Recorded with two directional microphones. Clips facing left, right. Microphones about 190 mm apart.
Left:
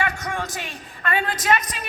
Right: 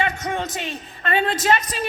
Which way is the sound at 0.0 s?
20° right (ahead or behind).